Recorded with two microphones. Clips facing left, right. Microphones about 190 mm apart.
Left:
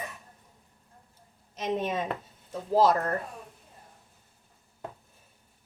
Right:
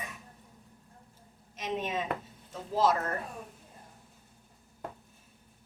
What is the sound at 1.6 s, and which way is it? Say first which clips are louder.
A woman's voice: left 4 dB; 45° left (ahead or behind).